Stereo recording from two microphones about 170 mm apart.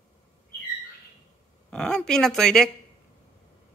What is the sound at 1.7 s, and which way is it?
Speech, 5° left (ahead or behind).